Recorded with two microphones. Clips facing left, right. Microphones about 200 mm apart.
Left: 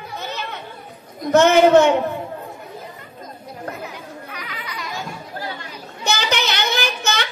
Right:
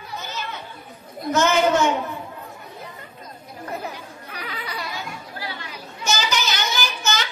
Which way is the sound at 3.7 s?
35° right (ahead or behind).